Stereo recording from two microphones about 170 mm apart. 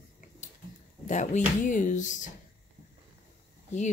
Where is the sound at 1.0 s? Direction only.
45° left (ahead or behind).